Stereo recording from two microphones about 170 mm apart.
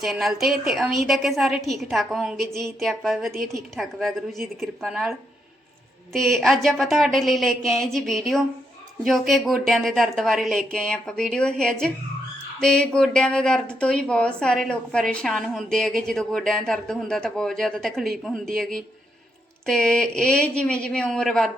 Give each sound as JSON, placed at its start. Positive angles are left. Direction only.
{"t": 0.0, "sound": "a woman's voice", "side_deg": 0}
{"t": 6.1, "sound": "a woman's voice", "side_deg": 0}